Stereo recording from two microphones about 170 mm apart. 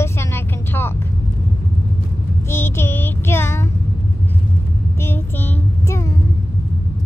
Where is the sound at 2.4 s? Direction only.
15° left (ahead or behind).